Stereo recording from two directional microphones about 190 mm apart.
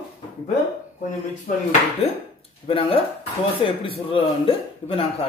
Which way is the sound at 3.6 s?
25° left (ahead or behind).